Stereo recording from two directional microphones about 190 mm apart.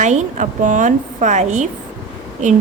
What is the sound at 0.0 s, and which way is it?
A woman's voice, 40° right (ahead or behind).